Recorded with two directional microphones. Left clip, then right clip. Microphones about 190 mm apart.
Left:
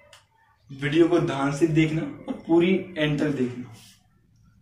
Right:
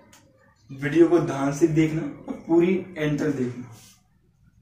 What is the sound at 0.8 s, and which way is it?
Speech, 20° right (ahead or behind).